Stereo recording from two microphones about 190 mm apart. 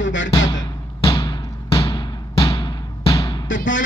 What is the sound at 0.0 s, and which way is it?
Music, 75° left (ahead or behind).